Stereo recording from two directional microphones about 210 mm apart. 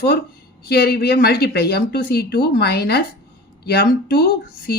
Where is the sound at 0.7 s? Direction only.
50° left (ahead or behind).